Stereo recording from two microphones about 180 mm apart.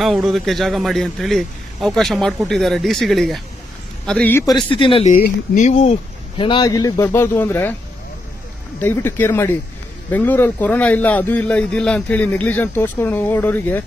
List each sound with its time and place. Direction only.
0.0 s a man's voice: centre (ahead or behind)
4.6 s speech: 30° left (ahead or behind)
5.0 s speech: 50° left (ahead or behind); by 7.7 s 10° left (ahead or behind)
8.7 s a man's voice: 15° left (ahead or behind)